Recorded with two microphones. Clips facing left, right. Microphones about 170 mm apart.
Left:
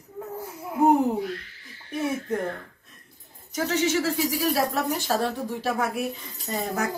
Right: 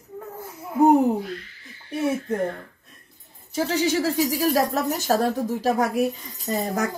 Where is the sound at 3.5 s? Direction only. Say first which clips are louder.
Right 2 dB; 30° right (ahead or behind).